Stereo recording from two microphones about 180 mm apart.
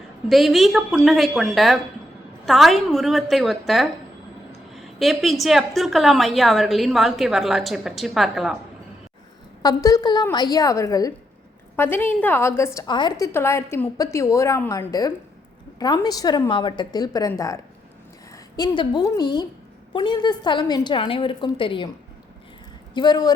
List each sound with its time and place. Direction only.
0.3 s a woman's voice: centre (ahead or behind)
9.6 s a woman's voice: 20° left (ahead or behind)
23.0 s a woman's voice: 25° left (ahead or behind)